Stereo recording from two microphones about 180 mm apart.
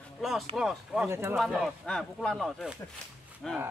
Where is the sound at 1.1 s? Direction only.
15° right (ahead or behind).